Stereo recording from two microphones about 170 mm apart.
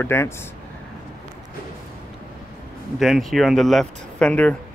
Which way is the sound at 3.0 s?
Centre (ahead or behind).